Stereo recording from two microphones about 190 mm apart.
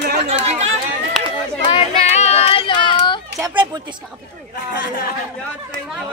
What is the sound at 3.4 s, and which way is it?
Speech, 20° right (ahead or behind).